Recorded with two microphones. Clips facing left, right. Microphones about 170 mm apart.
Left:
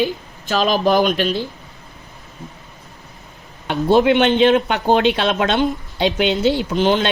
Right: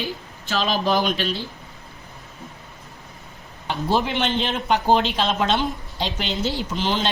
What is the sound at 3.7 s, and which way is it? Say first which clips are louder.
Speech: left 9 dB; 65° left (ahead or behind).